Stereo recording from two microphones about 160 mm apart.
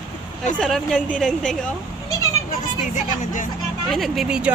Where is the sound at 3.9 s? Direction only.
Centre (ahead or behind).